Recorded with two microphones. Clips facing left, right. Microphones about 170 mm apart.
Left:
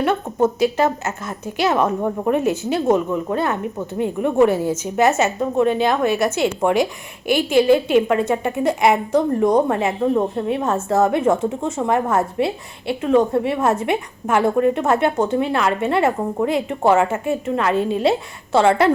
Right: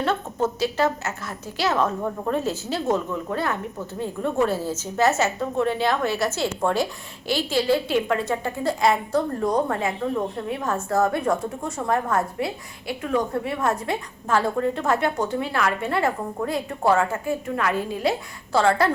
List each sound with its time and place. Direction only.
0.0 s a woman's voice: 15° left (ahead or behind)